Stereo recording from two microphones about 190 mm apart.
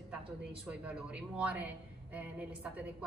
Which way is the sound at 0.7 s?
5° right (ahead or behind).